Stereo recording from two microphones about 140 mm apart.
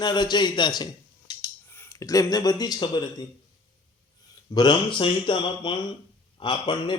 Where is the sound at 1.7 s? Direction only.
20° left (ahead or behind).